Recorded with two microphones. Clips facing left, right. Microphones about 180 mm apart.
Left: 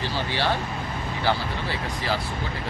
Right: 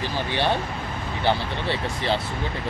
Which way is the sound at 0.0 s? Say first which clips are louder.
Right 2 dB; 20° right (ahead or behind).